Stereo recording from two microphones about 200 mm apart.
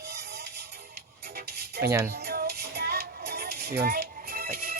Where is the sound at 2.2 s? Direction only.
50° right (ahead or behind).